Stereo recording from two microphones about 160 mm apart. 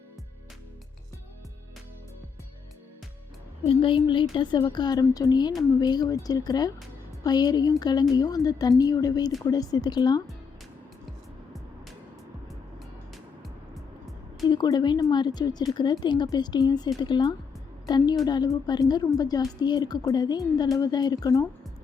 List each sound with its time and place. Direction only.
3.7 s a woman's voice: 35° left (ahead or behind)
14.5 s a woman's voice: 25° left (ahead or behind)